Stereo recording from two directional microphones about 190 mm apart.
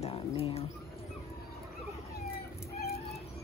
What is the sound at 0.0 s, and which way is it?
Bird, 30° left (ahead or behind).